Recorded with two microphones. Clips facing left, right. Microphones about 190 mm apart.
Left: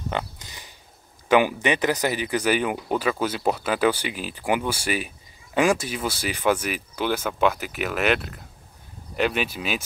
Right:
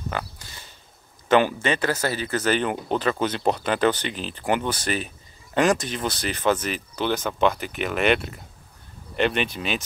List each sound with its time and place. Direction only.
0.1 s pig: 20° left (ahead or behind)
1.3 s speech: 15° left (ahead or behind)